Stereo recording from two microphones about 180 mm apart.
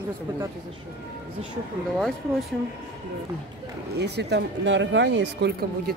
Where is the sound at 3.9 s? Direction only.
70° right (ahead or behind).